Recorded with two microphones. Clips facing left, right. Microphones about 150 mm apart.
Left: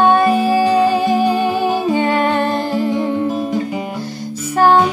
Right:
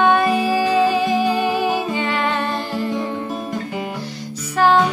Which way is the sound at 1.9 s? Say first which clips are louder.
Left 6 dB; 45° left (ahead or behind).